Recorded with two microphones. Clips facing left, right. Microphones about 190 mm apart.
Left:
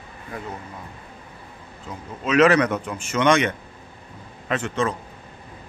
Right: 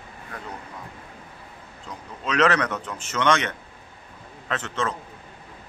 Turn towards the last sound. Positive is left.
turn(degrees=10)  # may be behind; listen again after turning